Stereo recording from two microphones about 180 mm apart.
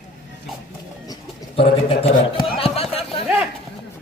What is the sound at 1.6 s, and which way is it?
Speech, 30° left (ahead or behind).